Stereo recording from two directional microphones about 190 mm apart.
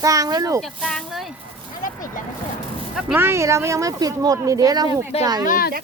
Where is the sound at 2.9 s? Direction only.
10° right (ahead or behind).